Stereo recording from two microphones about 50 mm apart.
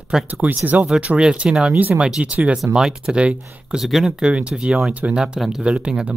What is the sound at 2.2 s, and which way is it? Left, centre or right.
Speech, right.